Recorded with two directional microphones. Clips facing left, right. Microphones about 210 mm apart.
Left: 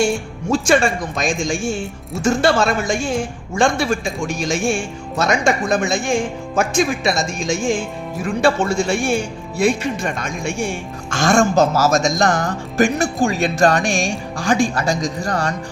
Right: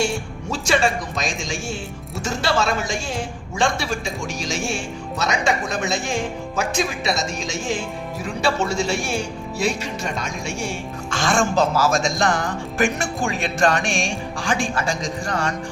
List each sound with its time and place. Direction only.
0.5 s speech: 50° left (ahead or behind)